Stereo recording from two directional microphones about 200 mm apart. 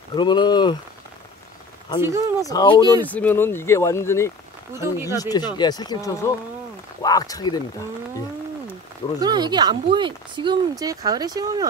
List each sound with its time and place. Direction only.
0.1 s speech: 20° left (ahead or behind)
2.0 s speech: 15° right (ahead or behind)
2.4 s speech: 20° left (ahead or behind)
3.0 s speech: 10° left (ahead or behind)
4.7 s speech: 15° right (ahead or behind)
5.1 s speech: 20° left (ahead or behind)
9.2 s speech: 20° right (ahead or behind)